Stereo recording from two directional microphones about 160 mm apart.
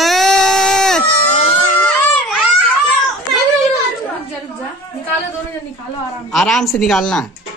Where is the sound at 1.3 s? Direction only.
45° left (ahead or behind).